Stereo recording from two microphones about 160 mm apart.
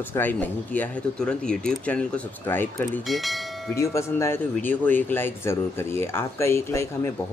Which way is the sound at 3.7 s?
15° left (ahead or behind).